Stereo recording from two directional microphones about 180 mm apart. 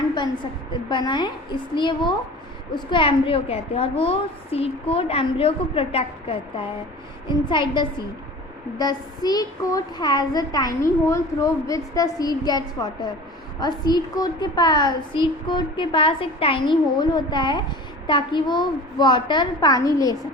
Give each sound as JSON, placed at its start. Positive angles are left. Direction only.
{"t": 0.9, "sound": "a woman's voice", "side_deg": 25}